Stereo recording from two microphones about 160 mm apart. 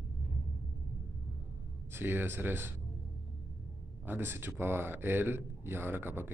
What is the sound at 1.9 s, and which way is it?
Speech, 15° right (ahead or behind).